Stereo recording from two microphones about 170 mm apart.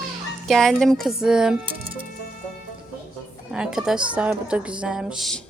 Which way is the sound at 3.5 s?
5° right (ahead or behind).